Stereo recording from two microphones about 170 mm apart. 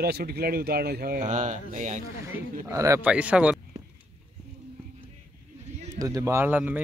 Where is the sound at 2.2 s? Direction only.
15° right (ahead or behind).